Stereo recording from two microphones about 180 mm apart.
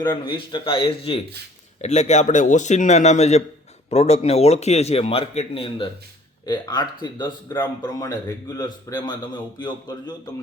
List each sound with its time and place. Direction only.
0.0 s a man's voice: 25° left (ahead or behind)